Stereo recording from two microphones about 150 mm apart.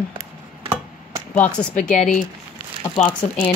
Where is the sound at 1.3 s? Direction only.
10° left (ahead or behind).